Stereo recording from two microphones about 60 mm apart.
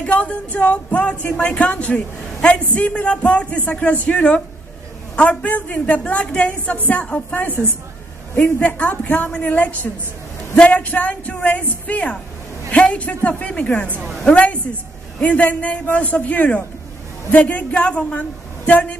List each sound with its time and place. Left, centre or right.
0.0 s speech: left